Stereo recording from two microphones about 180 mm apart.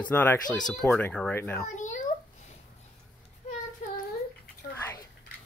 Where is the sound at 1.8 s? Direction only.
45° left (ahead or behind).